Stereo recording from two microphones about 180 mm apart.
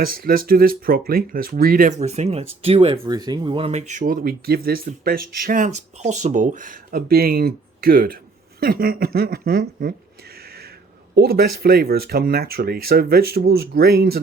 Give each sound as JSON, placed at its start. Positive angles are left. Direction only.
{"t": 0.0, "sound": "speech", "side_deg": -55}
{"t": 3.0, "sound": "speech", "side_deg": -20}
{"t": 11.1, "sound": "speech", "side_deg": -60}